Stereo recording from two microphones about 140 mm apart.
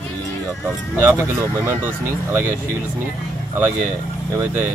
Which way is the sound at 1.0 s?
15° right (ahead or behind).